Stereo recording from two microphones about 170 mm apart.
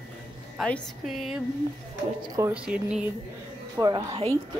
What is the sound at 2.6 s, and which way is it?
Speech, 5° right (ahead or behind).